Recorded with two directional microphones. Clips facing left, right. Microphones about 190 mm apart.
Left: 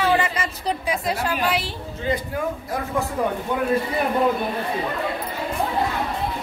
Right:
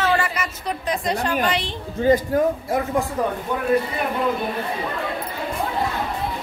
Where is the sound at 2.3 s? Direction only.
40° right (ahead or behind).